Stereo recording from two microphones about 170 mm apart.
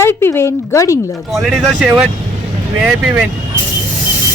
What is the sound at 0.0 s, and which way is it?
Speech, 15° left (ahead or behind).